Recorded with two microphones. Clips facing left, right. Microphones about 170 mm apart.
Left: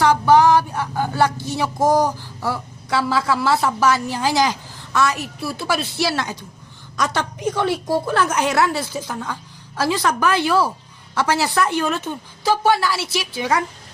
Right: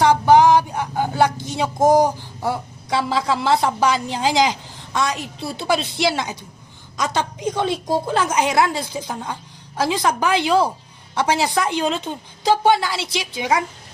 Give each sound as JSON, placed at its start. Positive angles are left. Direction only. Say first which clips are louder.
{"t": 0.0, "sound": "a woman's voice", "louder": "right 1 dB", "side_deg": -15}